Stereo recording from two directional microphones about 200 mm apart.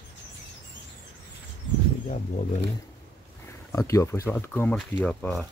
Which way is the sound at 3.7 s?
15° left (ahead or behind).